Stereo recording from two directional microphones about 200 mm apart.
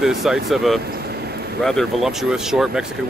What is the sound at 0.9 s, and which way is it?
Vehicle, 50° right (ahead or behind).